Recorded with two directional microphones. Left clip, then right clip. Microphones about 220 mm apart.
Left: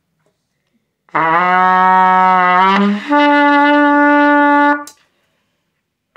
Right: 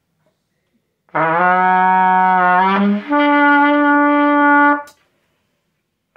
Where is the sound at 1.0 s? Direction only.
25° left (ahead or behind).